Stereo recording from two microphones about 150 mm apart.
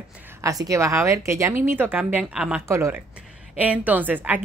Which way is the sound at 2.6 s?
20° right (ahead or behind).